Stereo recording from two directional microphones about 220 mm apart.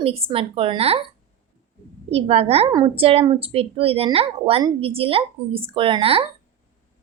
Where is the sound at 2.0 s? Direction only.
25° right (ahead or behind).